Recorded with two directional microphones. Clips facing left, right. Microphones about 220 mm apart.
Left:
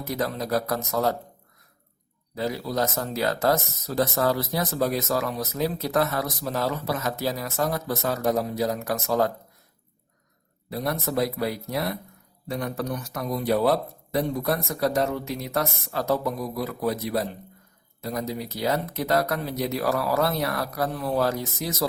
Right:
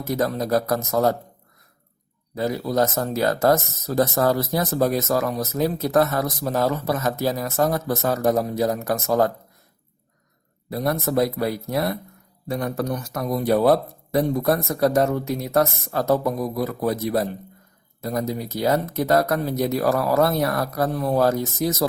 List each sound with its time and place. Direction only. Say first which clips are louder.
0.0 s speech: right 5 dB; 45° right (ahead or behind)
2.3 s speech: right 5 dB; 50° right (ahead or behind)
10.7 s speech: right 4 dB; 50° right (ahead or behind)